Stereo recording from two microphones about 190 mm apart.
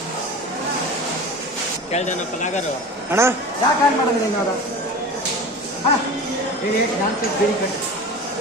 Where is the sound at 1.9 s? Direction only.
40° left (ahead or behind).